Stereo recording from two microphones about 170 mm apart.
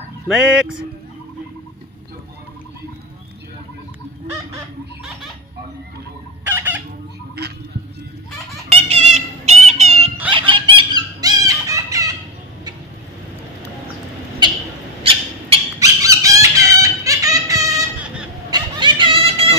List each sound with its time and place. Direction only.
0.3 s speech: 5° right (ahead or behind)
6.4 s chicken: 10° right (ahead or behind)
8.6 s fowl: 40° right (ahead or behind)
10.3 s a sound: 30° right (ahead or behind)
15.8 s chicken: 20° right (ahead or behind)
16.7 s giggle: 20° right (ahead or behind)
18.5 s a sound: 30° right (ahead or behind)